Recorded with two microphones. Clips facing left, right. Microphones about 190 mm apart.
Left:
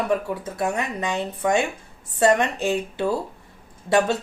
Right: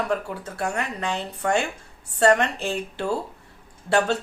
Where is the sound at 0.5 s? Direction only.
15° left (ahead or behind).